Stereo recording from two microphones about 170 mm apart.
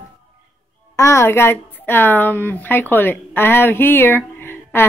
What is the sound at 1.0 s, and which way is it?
A woman's voice, 15° left (ahead or behind).